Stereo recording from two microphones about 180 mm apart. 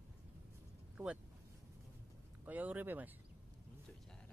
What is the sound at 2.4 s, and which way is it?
Speech, 10° right (ahead or behind).